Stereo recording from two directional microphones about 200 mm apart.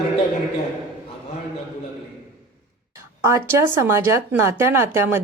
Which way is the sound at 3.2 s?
15° right (ahead or behind).